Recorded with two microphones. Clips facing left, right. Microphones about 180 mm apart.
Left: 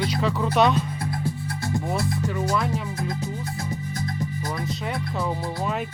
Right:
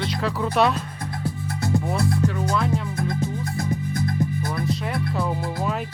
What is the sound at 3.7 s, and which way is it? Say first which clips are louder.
Music: right 5 dB; 55° right (ahead or behind).